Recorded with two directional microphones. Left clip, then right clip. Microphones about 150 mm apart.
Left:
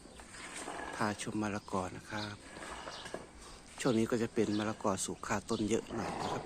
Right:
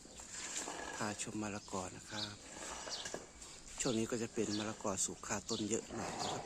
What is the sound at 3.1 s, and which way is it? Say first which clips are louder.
Walk: left 3 dB; 55° right (ahead or behind).